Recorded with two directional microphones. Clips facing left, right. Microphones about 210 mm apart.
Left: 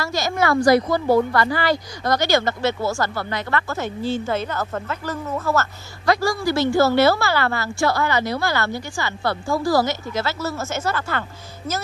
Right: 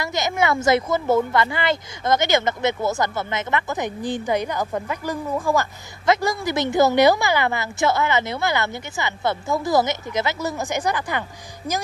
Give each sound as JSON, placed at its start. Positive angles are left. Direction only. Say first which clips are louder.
{"t": 0.0, "sound": "a woman's voice", "louder": "even", "side_deg": -20}